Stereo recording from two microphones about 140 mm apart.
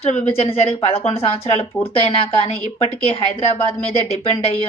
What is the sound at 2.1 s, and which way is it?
A woman's voice, 45° left (ahead or behind).